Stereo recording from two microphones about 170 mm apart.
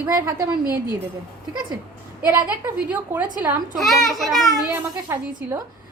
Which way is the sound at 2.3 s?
10° right (ahead or behind).